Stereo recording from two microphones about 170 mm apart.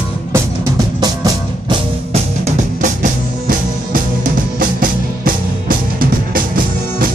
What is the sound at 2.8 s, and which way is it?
Music, 50° right (ahead or behind).